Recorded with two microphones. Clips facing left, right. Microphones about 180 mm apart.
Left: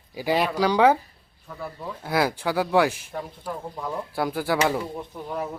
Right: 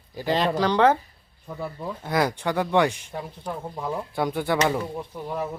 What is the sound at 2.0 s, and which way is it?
A man's voice, 5° left (ahead or behind).